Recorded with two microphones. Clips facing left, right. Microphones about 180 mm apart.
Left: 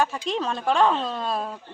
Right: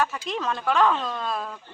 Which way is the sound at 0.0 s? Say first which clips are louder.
Left 2 dB; 30° left (ahead or behind).